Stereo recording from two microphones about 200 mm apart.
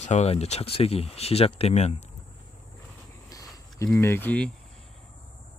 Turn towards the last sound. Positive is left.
turn(degrees=5)  # may be behind; listen again after turning